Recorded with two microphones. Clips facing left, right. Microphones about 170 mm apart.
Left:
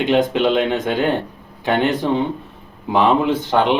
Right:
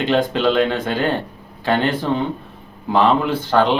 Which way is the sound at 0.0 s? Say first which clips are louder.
Left 1 dB; 15° left (ahead or behind).